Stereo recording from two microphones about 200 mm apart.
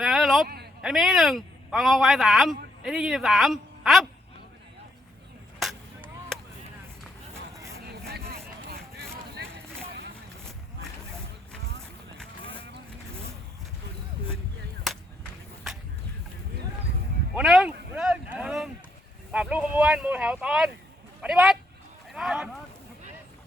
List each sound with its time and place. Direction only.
0.0 s a sound: centre (ahead or behind)
0.4 s a sound: 50° right (ahead or behind)
0.8 s speech: centre (ahead or behind)
5.5 s a sound: centre (ahead or behind)
7.5 s vehicle: 15° right (ahead or behind)
7.9 s vehicle: 55° right (ahead or behind)
17.3 s speech: centre (ahead or behind)
17.9 s boat: 5° right (ahead or behind)
19.3 s speech: 5° right (ahead or behind)